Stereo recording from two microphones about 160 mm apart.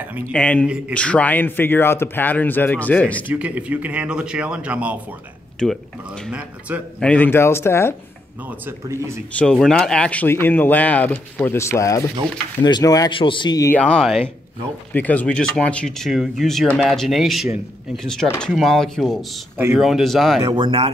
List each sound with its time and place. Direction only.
0.3 s speech: 5° left (ahead or behind)
3.3 s speech: 10° right (ahead or behind)
5.6 s speech: 5° left (ahead or behind)
7.0 s speech: 10° left (ahead or behind)
8.5 s speech: 15° right (ahead or behind)
9.4 s speech: 5° left (ahead or behind); by 13.7 s 30° left (ahead or behind)
13.7 s speech: 10° left (ahead or behind)
19.5 s speech: 10° right (ahead or behind)
20.5 s speech: 35° right (ahead or behind)